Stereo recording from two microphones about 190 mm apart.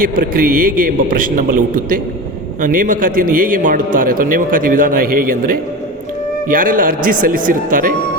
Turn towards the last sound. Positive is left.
turn(degrees=-45)  # may be behind; listen again after turning